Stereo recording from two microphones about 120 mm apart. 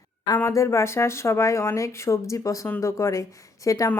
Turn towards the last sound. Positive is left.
turn(degrees=25)  # may be behind; listen again after turning